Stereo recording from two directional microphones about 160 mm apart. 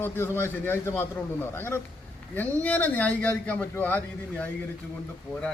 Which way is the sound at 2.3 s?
10° left (ahead or behind).